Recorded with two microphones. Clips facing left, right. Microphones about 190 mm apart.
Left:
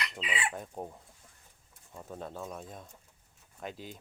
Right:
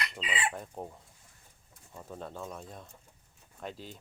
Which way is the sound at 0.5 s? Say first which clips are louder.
Left 1 dB; 5° left (ahead or behind).